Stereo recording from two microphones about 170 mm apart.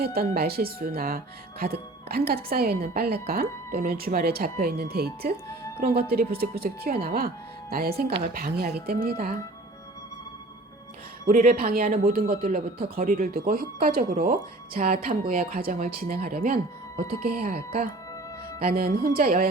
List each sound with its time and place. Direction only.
0.0 s speech: 65° right (ahead or behind)
11.3 s speech: 55° right (ahead or behind)